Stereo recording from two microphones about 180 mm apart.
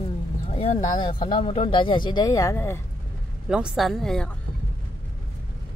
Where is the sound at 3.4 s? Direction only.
5° right (ahead or behind).